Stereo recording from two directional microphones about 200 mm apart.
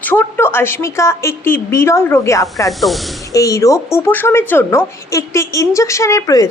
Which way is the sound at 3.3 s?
15° left (ahead or behind).